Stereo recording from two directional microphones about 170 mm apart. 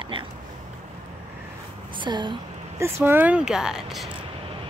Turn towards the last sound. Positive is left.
turn(degrees=0)  # may be behind; listen again after turning